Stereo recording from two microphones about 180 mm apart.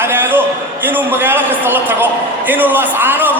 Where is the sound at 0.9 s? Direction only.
10° right (ahead or behind).